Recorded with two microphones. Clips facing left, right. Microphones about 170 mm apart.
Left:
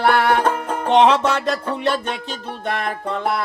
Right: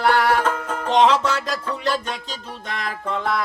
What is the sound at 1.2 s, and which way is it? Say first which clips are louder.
Music: left 4 dB; 60° left (ahead or behind).